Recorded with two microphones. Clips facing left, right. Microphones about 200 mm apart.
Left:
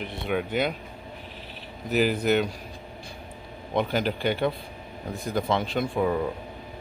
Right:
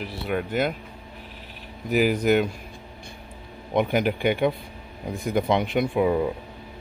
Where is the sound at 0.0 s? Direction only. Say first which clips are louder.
Right 1 dB; 5° right (ahead or behind).